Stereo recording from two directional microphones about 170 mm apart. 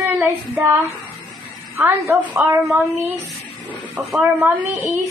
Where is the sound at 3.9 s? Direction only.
5° right (ahead or behind).